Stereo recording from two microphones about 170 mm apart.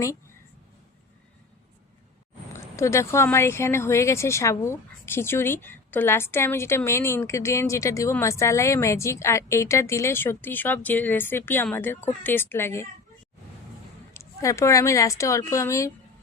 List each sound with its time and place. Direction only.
2.7 s a woman's voice: 15° left (ahead or behind)
14.1 s a woman's voice: 20° left (ahead or behind)